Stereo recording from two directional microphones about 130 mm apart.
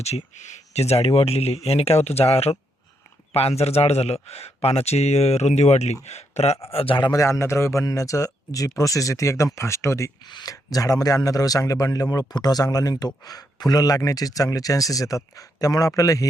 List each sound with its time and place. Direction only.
0.0 s a man's voice: 60° left (ahead or behind); by 10.1 s 20° left (ahead or behind)
10.2 s speech: 30° left (ahead or behind)